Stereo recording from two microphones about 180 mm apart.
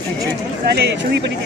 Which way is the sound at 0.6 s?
65° right (ahead or behind).